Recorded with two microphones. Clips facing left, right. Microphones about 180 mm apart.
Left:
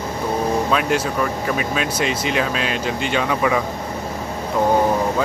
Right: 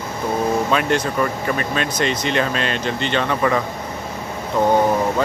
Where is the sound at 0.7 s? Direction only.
Centre (ahead or behind).